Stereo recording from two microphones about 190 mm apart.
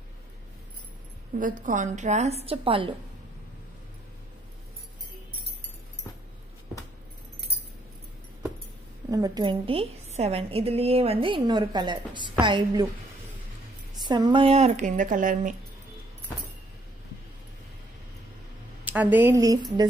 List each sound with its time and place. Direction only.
1.3 s a woman's voice: 50° right (ahead or behind); by 2.9 s 30° right (ahead or behind)
9.1 s a woman's voice: 20° right (ahead or behind)
14.0 s a woman's voice: 25° right (ahead or behind); by 15.5 s 45° right (ahead or behind)
18.9 s a woman's voice: 10° right (ahead or behind)